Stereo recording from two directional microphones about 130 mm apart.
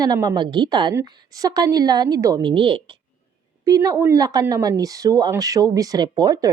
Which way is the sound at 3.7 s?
25° right (ahead or behind).